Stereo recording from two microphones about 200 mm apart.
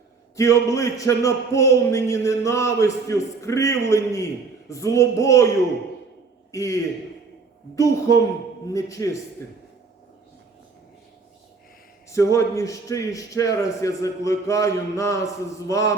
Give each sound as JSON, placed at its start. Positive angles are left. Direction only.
{"t": 0.3, "sound": "a man's voice", "side_deg": 15}
{"t": 6.5, "sound": "a man's voice", "side_deg": 15}
{"t": 7.8, "sound": "a man's voice", "side_deg": 15}
{"t": 12.1, "sound": "a man's voice", "side_deg": 15}